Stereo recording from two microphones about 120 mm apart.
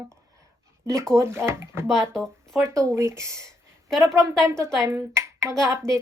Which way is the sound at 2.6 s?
25° right (ahead or behind).